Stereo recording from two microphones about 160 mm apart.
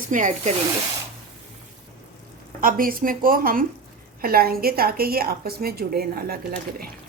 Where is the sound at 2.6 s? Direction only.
60° right (ahead or behind).